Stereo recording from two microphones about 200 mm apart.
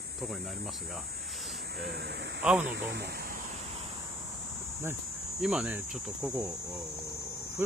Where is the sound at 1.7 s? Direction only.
50° right (ahead or behind).